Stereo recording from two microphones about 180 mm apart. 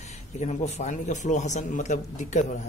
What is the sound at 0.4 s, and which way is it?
Speech, 40° left (ahead or behind).